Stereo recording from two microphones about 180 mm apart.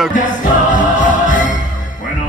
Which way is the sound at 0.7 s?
45° left (ahead or behind).